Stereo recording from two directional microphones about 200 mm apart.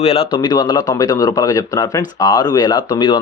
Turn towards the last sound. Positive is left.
turn(degrees=20)  # may be behind; listen again after turning